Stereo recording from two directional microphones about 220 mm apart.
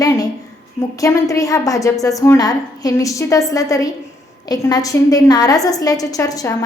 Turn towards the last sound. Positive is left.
turn(degrees=15)  # may be behind; listen again after turning